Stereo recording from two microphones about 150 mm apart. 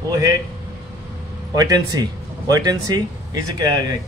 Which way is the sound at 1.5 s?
25° right (ahead or behind).